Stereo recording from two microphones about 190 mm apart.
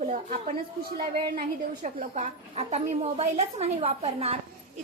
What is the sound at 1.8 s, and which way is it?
A woman's voice, 40° right (ahead or behind).